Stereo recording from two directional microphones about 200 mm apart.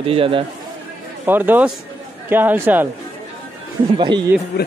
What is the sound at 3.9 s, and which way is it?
Speech, 25° right (ahead or behind).